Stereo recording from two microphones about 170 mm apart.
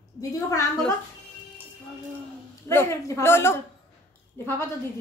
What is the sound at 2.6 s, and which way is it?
A woman's voice, 15° left (ahead or behind).